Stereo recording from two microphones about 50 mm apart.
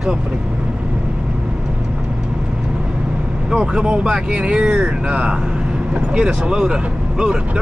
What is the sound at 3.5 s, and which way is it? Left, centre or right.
Speech, centre.